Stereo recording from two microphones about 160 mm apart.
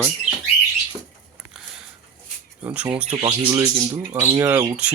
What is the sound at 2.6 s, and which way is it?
Speech, 10° right (ahead or behind).